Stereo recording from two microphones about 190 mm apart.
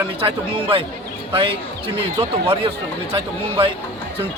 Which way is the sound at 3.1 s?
25° right (ahead or behind).